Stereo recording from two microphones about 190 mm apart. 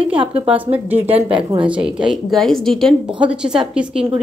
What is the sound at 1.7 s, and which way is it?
A woman's voice, 5° right (ahead or behind).